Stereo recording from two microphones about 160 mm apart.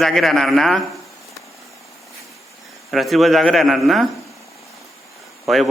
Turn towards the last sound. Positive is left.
turn(degrees=0)  # may be behind; listen again after turning